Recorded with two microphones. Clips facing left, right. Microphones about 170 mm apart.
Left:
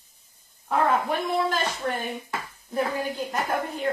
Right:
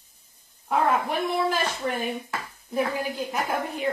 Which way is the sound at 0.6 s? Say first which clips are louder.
Even; 5° right (ahead or behind).